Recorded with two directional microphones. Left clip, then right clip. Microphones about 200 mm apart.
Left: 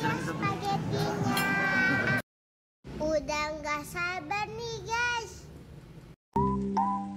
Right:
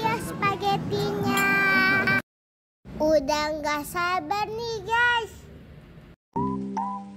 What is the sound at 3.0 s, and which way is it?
Child singing, 30° right (ahead or behind).